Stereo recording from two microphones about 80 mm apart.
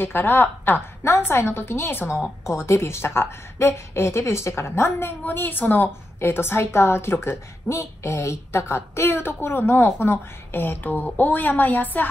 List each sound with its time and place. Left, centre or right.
0.0 s a woman's voice: left